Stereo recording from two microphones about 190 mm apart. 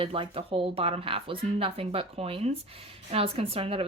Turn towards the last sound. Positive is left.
turn(degrees=-30)  # may be behind; listen again after turning